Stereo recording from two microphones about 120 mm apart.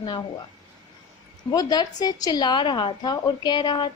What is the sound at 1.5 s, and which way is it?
A woman's voice, 35° left (ahead or behind).